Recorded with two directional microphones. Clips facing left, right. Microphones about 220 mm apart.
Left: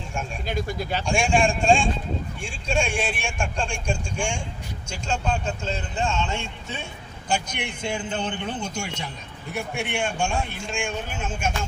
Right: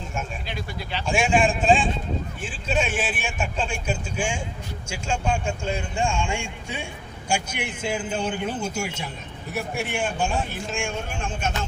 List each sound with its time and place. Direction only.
0.4 s speech: 45° left (ahead or behind)
1.0 s a man's voice: 5° right (ahead or behind)